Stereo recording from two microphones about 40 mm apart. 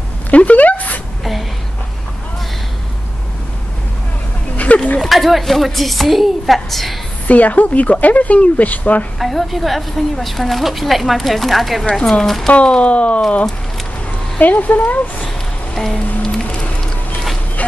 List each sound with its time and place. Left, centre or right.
0.3 s a sound: left
4.7 s a sound: left
5.0 s a woman's voice: centre
7.2 s a woman's voice: left
9.2 s a woman's voice: centre
12.4 s a woman's voice: left
14.4 s speech: left
15.2 s music: centre
16.4 s music: left
17.6 s a sound: left